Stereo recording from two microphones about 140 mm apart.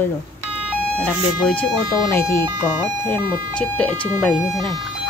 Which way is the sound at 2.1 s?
15° left (ahead or behind).